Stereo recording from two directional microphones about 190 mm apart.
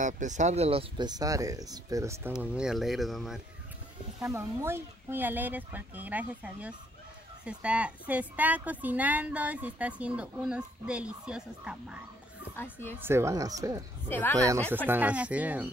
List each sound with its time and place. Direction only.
0.0 s speech: 40° right (ahead or behind); by 2.3 s 15° right (ahead or behind)
2.3 s speech: 5° right (ahead or behind)
4.3 s a woman's voice: 15° right (ahead or behind)
12.5 s speech: 10° left (ahead or behind)
13.0 s a woman's voice: 15° right (ahead or behind)
14.0 s speech: 10° left (ahead or behind)
14.9 s a woman's voice: 10° right (ahead or behind)